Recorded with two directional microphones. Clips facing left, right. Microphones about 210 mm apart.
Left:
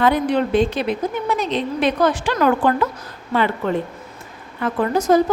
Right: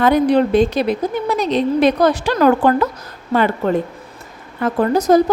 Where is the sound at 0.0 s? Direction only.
40° right (ahead or behind).